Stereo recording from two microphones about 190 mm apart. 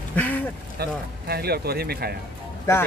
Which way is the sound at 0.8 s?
55° right (ahead or behind).